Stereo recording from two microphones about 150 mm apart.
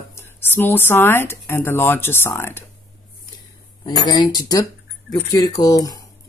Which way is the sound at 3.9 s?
30° left (ahead or behind).